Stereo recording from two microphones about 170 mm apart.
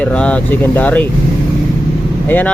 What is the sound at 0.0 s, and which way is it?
Speech, 5° left (ahead or behind).